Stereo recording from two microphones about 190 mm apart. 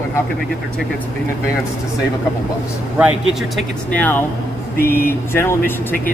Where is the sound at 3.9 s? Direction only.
10° left (ahead or behind).